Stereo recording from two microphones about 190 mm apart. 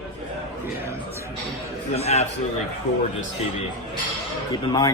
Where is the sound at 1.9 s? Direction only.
35° left (ahead or behind).